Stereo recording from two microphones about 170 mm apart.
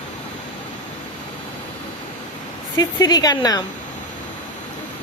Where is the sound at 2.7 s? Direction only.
25° left (ahead or behind).